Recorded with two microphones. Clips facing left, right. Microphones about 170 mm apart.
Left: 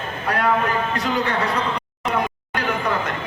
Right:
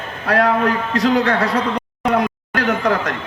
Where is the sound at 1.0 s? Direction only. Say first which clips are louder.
Right 6 dB; 75° right (ahead or behind).